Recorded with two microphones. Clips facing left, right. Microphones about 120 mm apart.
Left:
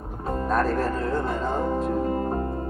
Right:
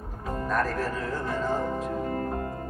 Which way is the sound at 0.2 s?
30° left (ahead or behind).